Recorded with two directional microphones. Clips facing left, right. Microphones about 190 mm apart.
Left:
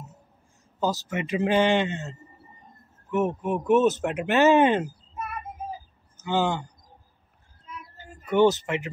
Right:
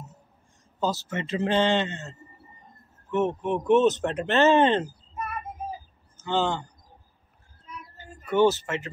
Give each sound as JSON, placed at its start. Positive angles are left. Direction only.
{"t": 0.7, "sound": "a man's voice", "side_deg": 15}
{"t": 2.8, "sound": "speech", "side_deg": 0}
{"t": 3.7, "sound": "speech", "side_deg": -20}
{"t": 4.0, "sound": "a man's voice", "side_deg": 10}
{"t": 6.1, "sound": "speech", "side_deg": 15}
{"t": 7.7, "sound": "a sound", "side_deg": 0}
{"t": 8.3, "sound": "a man's voice", "side_deg": 20}